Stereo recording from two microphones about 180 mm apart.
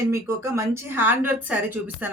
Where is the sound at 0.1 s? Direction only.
15° right (ahead or behind).